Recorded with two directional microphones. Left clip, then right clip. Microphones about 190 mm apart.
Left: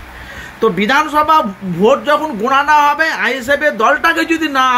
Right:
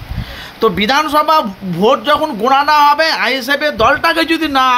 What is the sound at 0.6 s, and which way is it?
Speech, 25° right (ahead or behind).